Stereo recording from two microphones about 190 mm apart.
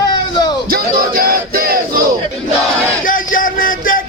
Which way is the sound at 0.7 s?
50° right (ahead or behind).